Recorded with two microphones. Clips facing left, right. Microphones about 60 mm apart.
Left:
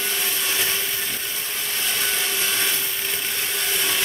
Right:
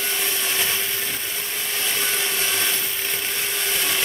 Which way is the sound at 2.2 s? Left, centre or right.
Centre.